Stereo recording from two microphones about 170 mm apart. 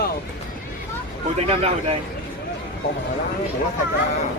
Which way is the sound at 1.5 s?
35° right (ahead or behind).